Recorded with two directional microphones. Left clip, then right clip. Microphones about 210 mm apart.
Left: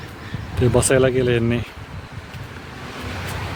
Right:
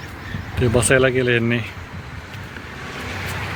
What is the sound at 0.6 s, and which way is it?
Speech, 20° left (ahead or behind).